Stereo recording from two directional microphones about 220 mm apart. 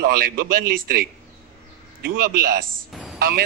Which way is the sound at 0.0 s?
40° right (ahead or behind).